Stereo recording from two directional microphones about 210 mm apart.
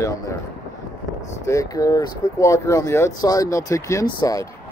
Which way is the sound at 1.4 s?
15° left (ahead or behind).